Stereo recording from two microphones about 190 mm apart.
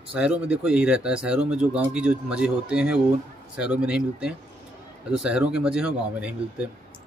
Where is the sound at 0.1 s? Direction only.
5° right (ahead or behind).